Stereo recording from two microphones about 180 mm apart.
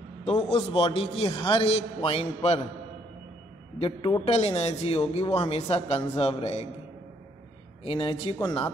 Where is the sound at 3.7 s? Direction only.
30° left (ahead or behind).